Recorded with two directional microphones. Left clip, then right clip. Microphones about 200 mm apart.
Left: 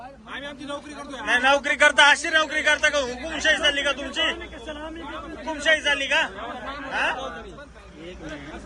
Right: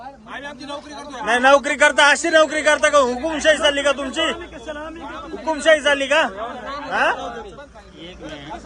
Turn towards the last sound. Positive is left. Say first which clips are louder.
# right 6 dB
turn(degrees=-45)  # may be behind; listen again after turning